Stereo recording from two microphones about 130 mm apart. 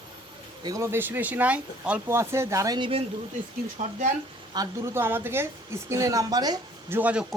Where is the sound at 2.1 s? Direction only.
20° right (ahead or behind).